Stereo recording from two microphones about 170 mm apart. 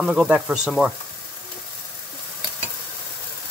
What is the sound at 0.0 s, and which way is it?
Speech, 5° right (ahead or behind).